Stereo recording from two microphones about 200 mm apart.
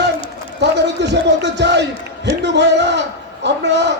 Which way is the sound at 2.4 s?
60° right (ahead or behind).